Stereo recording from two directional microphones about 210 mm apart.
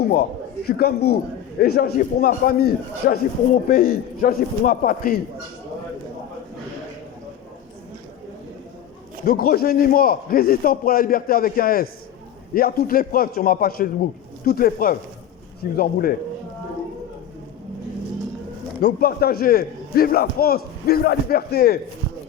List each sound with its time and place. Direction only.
0.1 s a man's voice: 45° left (ahead or behind)
9.2 s a man's voice: 45° left (ahead or behind)
18.8 s a man's voice: 45° left (ahead or behind)